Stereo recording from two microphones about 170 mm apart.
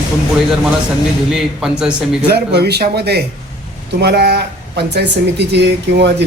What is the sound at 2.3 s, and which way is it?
Speech, 70° right (ahead or behind).